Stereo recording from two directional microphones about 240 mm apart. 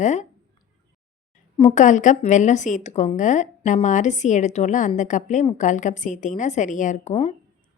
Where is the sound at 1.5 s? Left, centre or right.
Left.